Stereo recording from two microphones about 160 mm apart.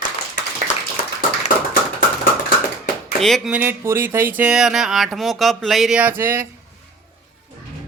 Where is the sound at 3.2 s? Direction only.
Centre (ahead or behind).